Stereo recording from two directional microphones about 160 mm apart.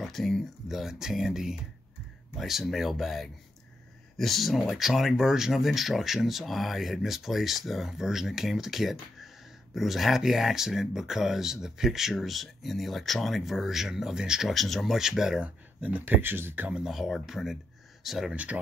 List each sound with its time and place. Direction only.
0.0 s speech: centre (ahead or behind)